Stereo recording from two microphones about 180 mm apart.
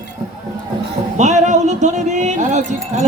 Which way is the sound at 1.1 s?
40° right (ahead or behind).